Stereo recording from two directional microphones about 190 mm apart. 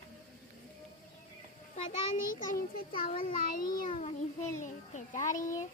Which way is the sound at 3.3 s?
50° left (ahead or behind).